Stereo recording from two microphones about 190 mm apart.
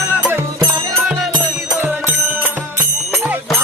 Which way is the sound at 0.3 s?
15° right (ahead or behind).